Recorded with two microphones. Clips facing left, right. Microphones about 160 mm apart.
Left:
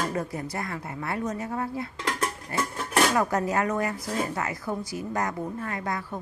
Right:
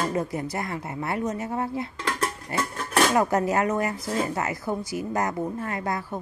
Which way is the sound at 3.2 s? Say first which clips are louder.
Right 3 dB; 25° right (ahead or behind).